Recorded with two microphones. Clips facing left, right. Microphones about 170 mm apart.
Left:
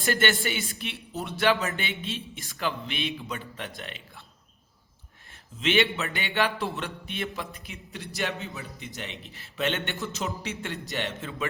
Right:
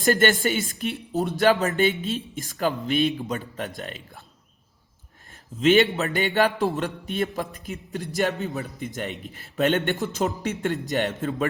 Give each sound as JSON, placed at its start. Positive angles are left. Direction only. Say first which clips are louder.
{"t": 0.0, "sound": "speech", "louder": "right 6 dB", "side_deg": -40}
{"t": 5.5, "sound": "speech", "louder": "right 7 dB", "side_deg": -40}